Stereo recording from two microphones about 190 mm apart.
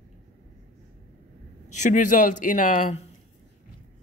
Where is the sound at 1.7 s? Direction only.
40° left (ahead or behind).